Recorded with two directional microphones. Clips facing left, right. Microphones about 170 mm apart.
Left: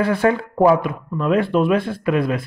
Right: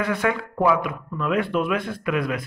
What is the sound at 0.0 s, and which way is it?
A man's voice, 30° left (ahead or behind).